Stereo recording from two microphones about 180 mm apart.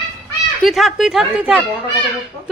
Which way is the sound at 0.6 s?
Centre (ahead or behind).